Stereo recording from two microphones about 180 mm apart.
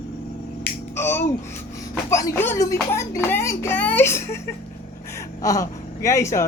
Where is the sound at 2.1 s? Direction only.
15° left (ahead or behind).